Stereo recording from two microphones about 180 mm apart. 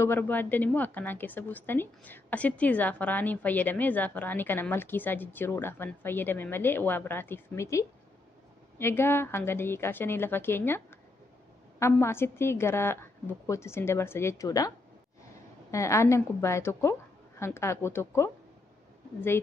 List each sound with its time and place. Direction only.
0.0 s a woman's voice: 10° left (ahead or behind)
11.8 s a woman's voice: 15° left (ahead or behind)
15.7 s a woman's voice: 15° left (ahead or behind)